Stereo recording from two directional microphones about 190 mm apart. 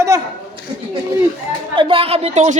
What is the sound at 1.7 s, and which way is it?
Speech, 30° right (ahead or behind).